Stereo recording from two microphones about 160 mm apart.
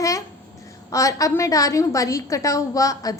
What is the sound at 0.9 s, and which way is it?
A woman's voice, 20° left (ahead or behind).